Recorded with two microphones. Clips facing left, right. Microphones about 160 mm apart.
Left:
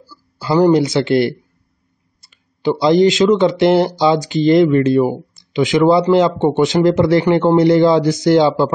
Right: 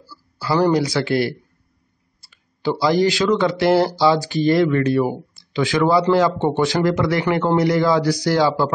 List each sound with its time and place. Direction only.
0.0 s speech: 20° left (ahead or behind)